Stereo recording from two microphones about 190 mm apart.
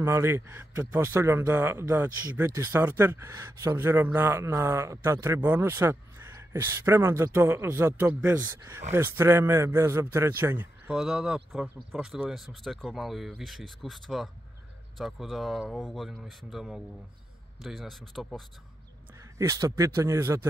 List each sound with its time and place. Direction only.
0.0 s a man's voice: 15° right (ahead or behind)
19.3 s speech: 15° right (ahead or behind)